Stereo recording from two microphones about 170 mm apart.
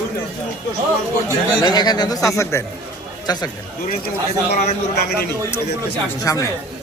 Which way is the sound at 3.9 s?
60° left (ahead or behind).